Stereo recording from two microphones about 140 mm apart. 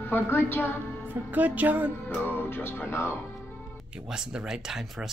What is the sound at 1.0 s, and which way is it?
Speech, 10° right (ahead or behind).